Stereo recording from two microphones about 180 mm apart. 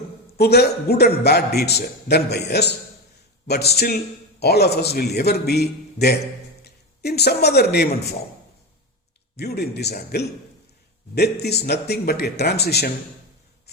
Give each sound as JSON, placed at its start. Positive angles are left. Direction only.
{"t": 0.3, "sound": "a man's voice", "side_deg": 65}
{"t": 9.3, "sound": "a man's voice", "side_deg": 60}